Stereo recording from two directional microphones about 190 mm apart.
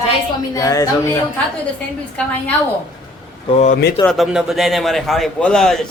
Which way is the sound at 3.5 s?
35° left (ahead or behind).